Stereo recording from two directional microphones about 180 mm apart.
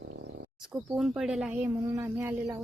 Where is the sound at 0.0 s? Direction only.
80° right.